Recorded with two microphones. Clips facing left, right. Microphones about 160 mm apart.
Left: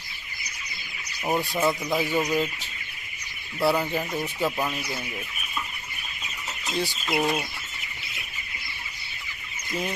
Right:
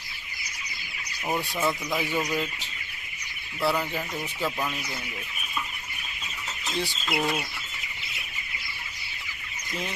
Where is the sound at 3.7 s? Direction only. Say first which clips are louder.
Left 3 dB; 10° left (ahead or behind).